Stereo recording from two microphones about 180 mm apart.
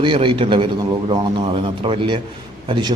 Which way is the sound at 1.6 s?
30° right (ahead or behind).